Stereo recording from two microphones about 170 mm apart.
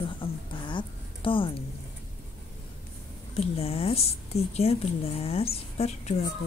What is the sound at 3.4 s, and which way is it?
Speech, 35° left (ahead or behind).